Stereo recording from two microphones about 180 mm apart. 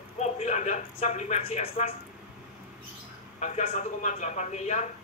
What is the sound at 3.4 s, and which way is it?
A man's voice, 40° left (ahead or behind).